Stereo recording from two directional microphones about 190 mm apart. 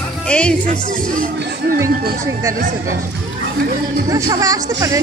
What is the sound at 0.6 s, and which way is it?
Speech, 45° right (ahead or behind).